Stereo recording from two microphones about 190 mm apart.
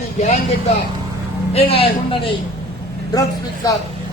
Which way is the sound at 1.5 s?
30° left (ahead or behind).